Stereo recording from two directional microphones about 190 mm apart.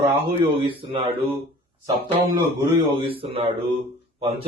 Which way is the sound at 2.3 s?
25° right (ahead or behind).